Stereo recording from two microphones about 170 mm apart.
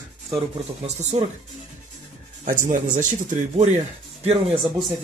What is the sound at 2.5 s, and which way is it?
Speech, 50° right (ahead or behind).